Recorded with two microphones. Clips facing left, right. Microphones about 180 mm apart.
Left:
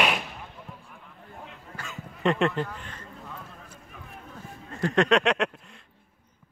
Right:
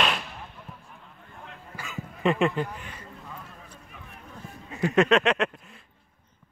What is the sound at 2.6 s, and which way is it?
Speech, 10° right (ahead or behind).